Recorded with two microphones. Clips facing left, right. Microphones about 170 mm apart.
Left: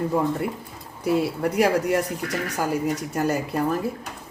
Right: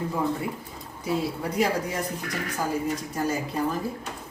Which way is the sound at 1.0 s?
65° left (ahead or behind).